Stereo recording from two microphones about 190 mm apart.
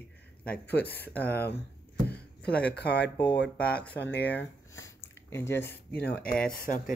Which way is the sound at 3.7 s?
5° left (ahead or behind).